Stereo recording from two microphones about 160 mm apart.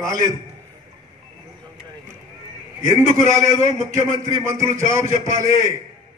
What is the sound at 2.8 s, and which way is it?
A man's voice, 20° right (ahead or behind).